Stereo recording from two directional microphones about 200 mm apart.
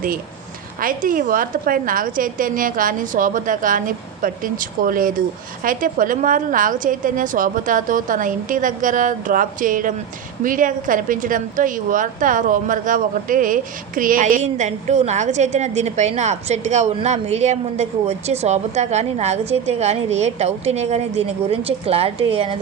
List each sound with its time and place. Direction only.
0.8 s a woman's voice: 45° right (ahead or behind); by 22.5 s 30° right (ahead or behind)